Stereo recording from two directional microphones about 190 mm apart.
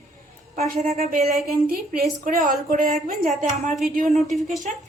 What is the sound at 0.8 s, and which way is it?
Speech, 35° right (ahead or behind).